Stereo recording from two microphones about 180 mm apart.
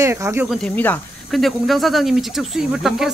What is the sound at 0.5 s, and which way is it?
Speech, 5° left (ahead or behind).